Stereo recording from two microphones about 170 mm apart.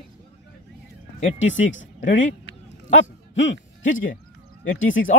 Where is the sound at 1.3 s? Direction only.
90° left.